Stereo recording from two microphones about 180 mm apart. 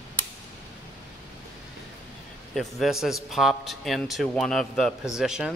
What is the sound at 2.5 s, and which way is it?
A man's voice, centre (ahead or behind).